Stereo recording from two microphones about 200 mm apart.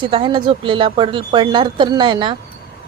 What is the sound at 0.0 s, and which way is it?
A woman's voice, 25° right (ahead or behind).